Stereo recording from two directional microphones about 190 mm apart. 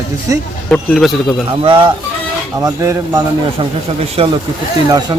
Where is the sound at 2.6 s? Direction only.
15° right (ahead or behind).